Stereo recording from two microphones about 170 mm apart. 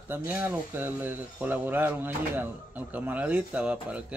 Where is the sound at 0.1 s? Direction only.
10° right (ahead or behind).